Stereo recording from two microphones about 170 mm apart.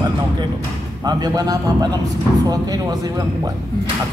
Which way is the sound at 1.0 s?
20° right (ahead or behind).